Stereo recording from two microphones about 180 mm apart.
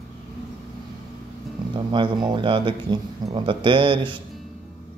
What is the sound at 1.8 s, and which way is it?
Speech, 25° right (ahead or behind).